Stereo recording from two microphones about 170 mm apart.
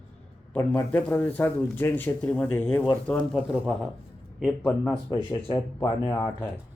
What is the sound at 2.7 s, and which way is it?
Speech, 25° left (ahead or behind).